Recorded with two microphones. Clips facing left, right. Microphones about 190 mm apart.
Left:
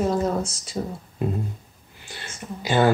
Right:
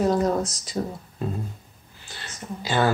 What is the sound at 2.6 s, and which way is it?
Speech, 20° left (ahead or behind).